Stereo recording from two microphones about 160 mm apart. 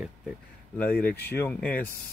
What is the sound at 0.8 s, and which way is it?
Speech, 65° left (ahead or behind).